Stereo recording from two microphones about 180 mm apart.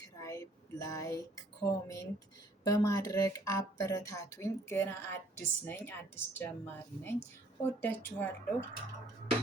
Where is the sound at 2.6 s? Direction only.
20° left (ahead or behind).